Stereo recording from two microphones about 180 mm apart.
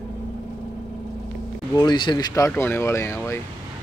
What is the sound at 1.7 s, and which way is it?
Speech, 20° left (ahead or behind).